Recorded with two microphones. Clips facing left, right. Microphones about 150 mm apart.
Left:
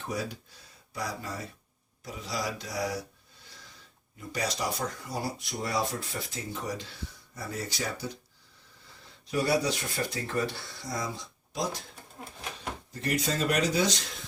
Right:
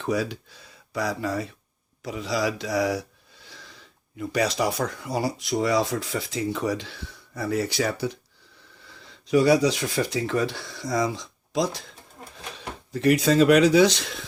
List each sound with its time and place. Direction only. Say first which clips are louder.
0.0 s speech: right 8 dB; 90° right
3.4 s wheeze: right 6 dB; 85° right
4.2 s speech: right 8 dB; 75° right (ahead or behind)
9.0 s speech: right 10 dB; 90° right
12.9 s speech: right 11 dB; 75° right (ahead or behind)